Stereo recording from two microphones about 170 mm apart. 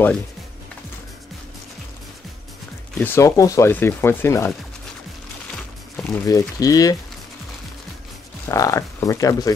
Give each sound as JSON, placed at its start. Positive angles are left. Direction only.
{"t": 2.9, "sound": "speech", "side_deg": 10}
{"t": 6.1, "sound": "speech", "side_deg": 20}
{"t": 8.5, "sound": "speech", "side_deg": 20}